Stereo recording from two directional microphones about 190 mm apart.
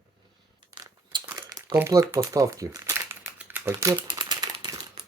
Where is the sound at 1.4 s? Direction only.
20° right (ahead or behind).